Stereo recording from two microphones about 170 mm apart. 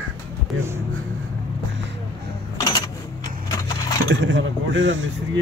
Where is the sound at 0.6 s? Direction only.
15° right (ahead or behind).